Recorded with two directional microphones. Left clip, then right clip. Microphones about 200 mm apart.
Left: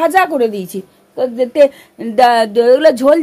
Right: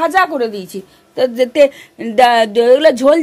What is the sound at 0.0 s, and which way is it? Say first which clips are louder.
Speech: left 2 dB; 30° left (ahead or behind).